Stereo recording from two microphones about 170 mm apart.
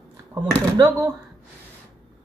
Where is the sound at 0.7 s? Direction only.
20° right (ahead or behind).